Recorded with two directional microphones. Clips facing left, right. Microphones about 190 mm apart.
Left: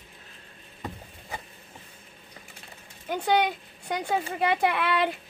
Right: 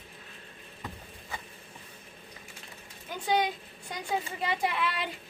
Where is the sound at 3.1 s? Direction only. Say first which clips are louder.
Left 4 dB; 65° left (ahead or behind).